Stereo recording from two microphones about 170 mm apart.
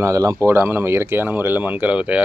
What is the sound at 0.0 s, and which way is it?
Speech, 20° right (ahead or behind).